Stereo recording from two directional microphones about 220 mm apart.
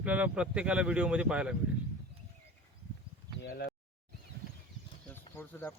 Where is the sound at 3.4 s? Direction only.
45° left (ahead or behind).